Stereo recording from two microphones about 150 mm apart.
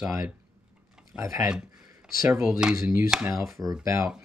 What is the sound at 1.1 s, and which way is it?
Speech, 20° right (ahead or behind).